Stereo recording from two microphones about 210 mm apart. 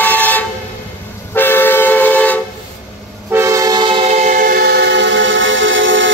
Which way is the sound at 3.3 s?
15° right (ahead or behind).